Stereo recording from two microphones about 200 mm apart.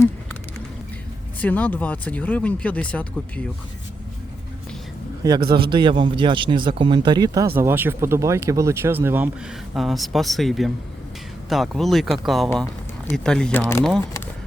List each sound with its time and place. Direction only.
1.4 s speech: 10° left (ahead or behind)
5.2 s a man's voice: 20° right (ahead or behind); by 13.6 s 5° left (ahead or behind)